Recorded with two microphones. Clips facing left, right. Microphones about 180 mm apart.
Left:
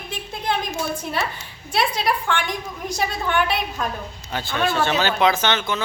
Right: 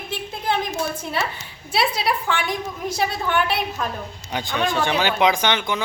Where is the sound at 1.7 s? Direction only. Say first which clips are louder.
Even; 5° right (ahead or behind).